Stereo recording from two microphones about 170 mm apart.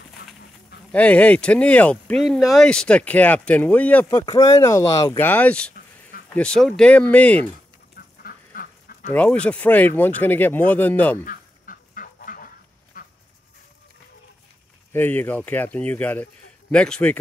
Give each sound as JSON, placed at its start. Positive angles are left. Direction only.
{"t": 0.9, "sound": "speech", "side_deg": 10}
{"t": 4.2, "sound": "speech", "side_deg": 20}
{"t": 7.9, "sound": "duck", "side_deg": 60}
{"t": 9.1, "sound": "speech", "side_deg": 10}
{"t": 11.2, "sound": "goose", "side_deg": 55}
{"t": 12.9, "sound": "dog", "side_deg": 55}
{"t": 14.9, "sound": "a man's voice", "side_deg": 10}